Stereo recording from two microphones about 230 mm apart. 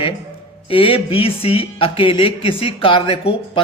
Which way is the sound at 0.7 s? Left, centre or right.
Left.